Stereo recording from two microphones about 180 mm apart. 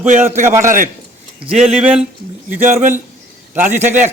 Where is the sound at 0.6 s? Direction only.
50° right (ahead or behind).